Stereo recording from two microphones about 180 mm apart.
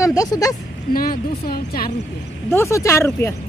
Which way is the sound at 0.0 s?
20° left (ahead or behind).